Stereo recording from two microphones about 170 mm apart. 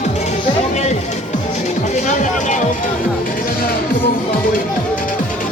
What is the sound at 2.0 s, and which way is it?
Music, 45° left (ahead or behind).